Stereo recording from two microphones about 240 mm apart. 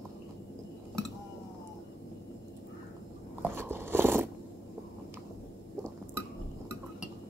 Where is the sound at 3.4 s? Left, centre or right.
Centre.